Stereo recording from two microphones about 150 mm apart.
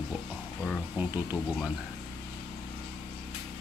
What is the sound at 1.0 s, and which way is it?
Speech, 10° right (ahead or behind).